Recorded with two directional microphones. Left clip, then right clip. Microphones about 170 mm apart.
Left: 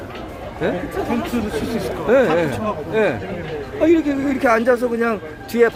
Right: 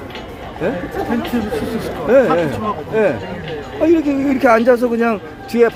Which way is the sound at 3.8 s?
5° right (ahead or behind).